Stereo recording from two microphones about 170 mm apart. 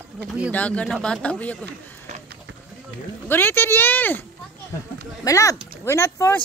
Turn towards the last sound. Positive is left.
turn(degrees=15)  # may be behind; listen again after turning